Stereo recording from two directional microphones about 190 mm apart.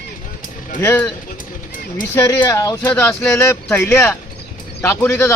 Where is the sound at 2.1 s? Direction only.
15° left (ahead or behind).